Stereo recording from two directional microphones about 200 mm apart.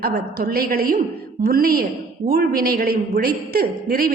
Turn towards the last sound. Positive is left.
turn(degrees=-45)  # may be behind; listen again after turning